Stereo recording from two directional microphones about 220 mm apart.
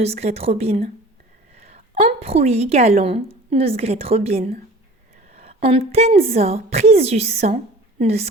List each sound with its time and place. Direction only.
0.0 s a woman's voice: 30° right (ahead or behind)